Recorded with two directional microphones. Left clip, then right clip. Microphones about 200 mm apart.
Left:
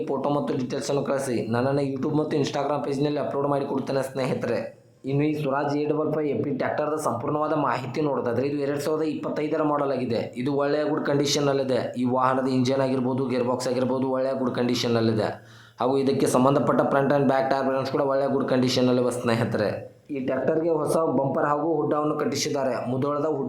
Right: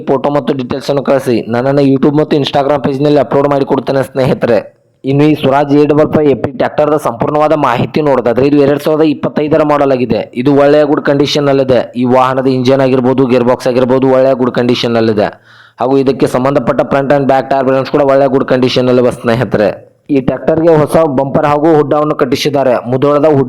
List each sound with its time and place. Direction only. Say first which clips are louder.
0.1 s a man's voice: right 16 dB; 30° right (ahead or behind)